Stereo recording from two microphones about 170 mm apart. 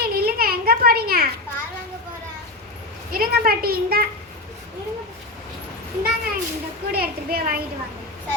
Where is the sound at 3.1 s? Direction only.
60° right (ahead or behind).